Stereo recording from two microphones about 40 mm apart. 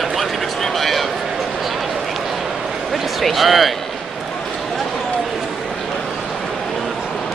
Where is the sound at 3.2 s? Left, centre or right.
Centre.